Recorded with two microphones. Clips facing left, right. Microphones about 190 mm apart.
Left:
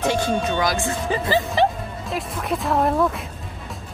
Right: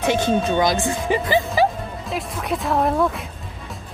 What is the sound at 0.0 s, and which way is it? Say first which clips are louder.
Music: right 1 dB; 20° right (ahead or behind).